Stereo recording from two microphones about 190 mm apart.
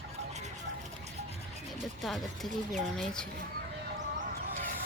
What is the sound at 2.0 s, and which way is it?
Speech, centre (ahead or behind).